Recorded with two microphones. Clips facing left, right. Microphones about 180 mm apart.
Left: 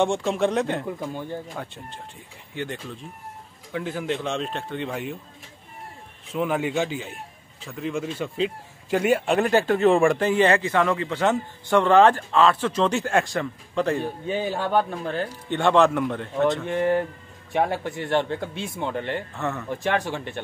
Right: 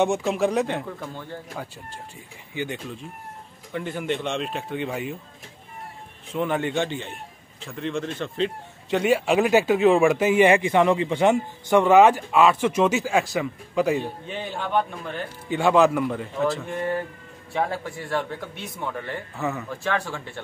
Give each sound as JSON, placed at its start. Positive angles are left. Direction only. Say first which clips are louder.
{"t": 0.0, "sound": "speech", "louder": "even", "side_deg": -5}
{"t": 0.8, "sound": "speech", "louder": "left 4 dB", "side_deg": 15}
{"t": 2.5, "sound": "speech", "louder": "right 1 dB", "side_deg": -5}
{"t": 6.3, "sound": "speech", "louder": "even", "side_deg": 5}
{"t": 14.2, "sound": "speech", "louder": "left 6 dB", "side_deg": 5}
{"t": 14.7, "sound": "speech", "louder": "right 1 dB", "side_deg": 35}
{"t": 15.4, "sound": "speech", "louder": "right 1 dB", "side_deg": -5}
{"t": 17.5, "sound": "a man's voice", "louder": "left 3 dB", "side_deg": 20}
{"t": 19.3, "sound": "speech", "louder": "right 1 dB", "side_deg": 0}
{"t": 19.7, "sound": "a man's voice", "louder": "left 2 dB", "side_deg": 20}